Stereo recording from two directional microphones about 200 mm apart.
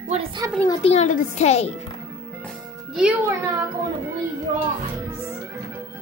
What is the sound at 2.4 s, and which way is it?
A child's voice, centre (ahead or behind).